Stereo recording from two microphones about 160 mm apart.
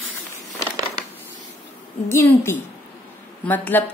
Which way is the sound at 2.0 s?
15° left (ahead or behind).